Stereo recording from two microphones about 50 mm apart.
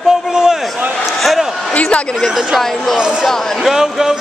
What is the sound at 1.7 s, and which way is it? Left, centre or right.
Speech, left.